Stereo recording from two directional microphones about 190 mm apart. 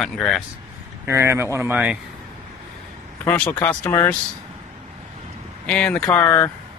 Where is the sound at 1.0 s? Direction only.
15° right (ahead or behind).